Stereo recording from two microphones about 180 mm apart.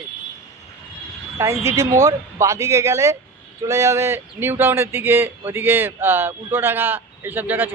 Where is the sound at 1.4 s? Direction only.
15° right (ahead or behind).